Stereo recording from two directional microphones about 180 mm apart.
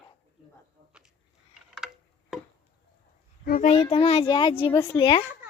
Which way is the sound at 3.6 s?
35° left (ahead or behind).